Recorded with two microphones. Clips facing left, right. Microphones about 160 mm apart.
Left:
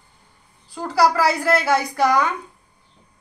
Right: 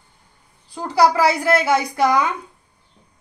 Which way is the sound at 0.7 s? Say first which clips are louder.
Right 2 dB; 15° right (ahead or behind).